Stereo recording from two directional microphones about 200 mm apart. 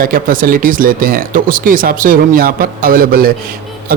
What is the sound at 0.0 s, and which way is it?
A man's voice, 45° right (ahead or behind).